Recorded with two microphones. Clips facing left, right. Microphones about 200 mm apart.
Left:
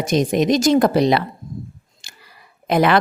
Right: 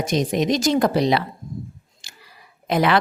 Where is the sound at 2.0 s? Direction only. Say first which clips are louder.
Left 2 dB; 50° left (ahead or behind).